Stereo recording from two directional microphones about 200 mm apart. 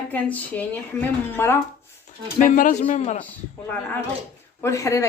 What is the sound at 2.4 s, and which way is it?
Speech, 40° left (ahead or behind).